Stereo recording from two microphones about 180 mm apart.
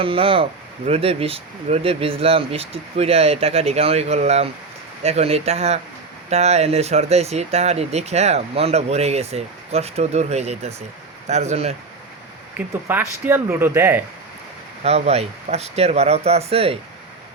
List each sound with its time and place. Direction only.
0.0 s speech: 30° right (ahead or behind)
12.5 s speech: 10° right (ahead or behind)
14.8 s speech: 35° right (ahead or behind)